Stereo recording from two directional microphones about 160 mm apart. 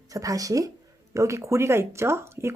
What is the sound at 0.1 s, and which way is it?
Speech, 20° right (ahead or behind).